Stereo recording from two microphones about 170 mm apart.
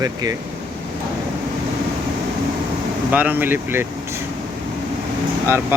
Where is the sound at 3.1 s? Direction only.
10° right (ahead or behind).